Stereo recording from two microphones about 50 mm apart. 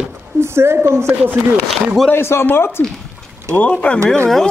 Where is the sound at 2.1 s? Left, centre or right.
Left.